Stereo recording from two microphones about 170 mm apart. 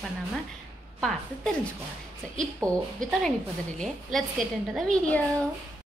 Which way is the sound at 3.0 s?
50° right (ahead or behind).